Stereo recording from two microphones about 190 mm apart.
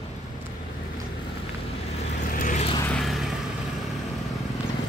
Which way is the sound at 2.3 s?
40° left (ahead or behind).